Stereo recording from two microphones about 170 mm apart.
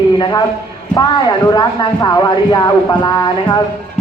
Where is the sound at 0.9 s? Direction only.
25° left (ahead or behind).